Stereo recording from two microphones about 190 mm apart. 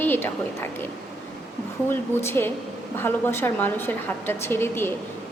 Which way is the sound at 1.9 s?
10° left (ahead or behind).